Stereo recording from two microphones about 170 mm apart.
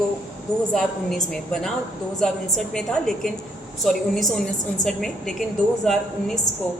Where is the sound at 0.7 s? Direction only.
5° left (ahead or behind).